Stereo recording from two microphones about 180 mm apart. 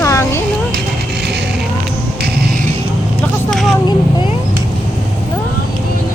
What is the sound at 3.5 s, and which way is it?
Vehicle, centre (ahead or behind).